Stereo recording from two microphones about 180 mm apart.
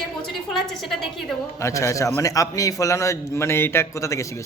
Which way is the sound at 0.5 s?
Centre (ahead or behind).